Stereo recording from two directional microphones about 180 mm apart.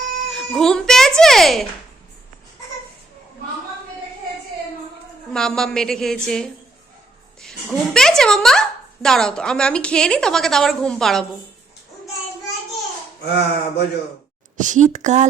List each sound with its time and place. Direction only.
0.3 s a child's voice: centre (ahead or behind)
5.3 s speech: 5° left (ahead or behind)
13.2 s speech: 65° left (ahead or behind)
14.5 s a woman's voice: 45° right (ahead or behind)